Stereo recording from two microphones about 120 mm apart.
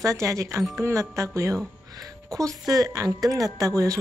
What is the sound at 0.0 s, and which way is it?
Speech, 25° right (ahead or behind).